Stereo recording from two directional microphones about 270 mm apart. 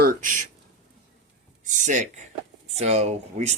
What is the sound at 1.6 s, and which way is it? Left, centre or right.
Speech, right.